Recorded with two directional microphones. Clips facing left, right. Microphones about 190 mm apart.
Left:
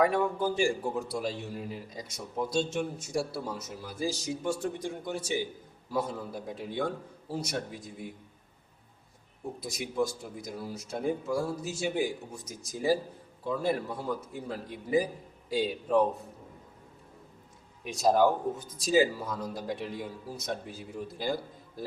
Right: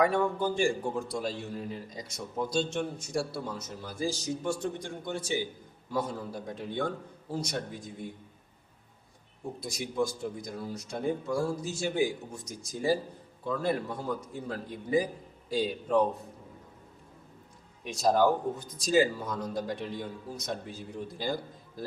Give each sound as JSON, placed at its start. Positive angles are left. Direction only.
{"t": 0.0, "sound": "a man's voice", "side_deg": 5}
{"t": 9.6, "sound": "a man's voice", "side_deg": 5}
{"t": 17.8, "sound": "a man's voice", "side_deg": 5}